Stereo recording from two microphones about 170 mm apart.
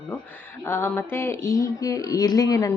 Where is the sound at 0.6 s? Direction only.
15° left (ahead or behind).